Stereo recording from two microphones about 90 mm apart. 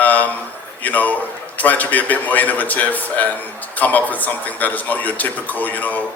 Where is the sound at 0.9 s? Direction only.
20° left (ahead or behind).